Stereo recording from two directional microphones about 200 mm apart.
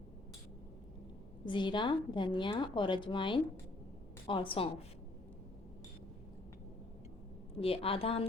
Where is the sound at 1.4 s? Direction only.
25° left (ahead or behind).